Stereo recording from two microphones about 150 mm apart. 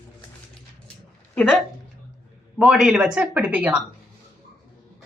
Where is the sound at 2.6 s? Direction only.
5° right (ahead or behind).